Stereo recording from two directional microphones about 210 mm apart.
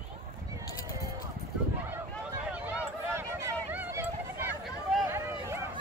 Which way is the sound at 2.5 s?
10° right (ahead or behind).